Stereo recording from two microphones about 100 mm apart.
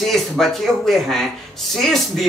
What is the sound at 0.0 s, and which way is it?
A woman's voice, centre (ahead or behind).